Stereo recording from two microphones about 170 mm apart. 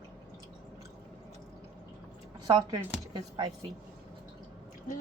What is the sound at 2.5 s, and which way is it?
Speech, 25° right (ahead or behind).